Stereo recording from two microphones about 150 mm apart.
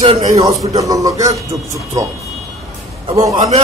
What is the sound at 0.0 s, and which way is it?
Speech, 40° right (ahead or behind).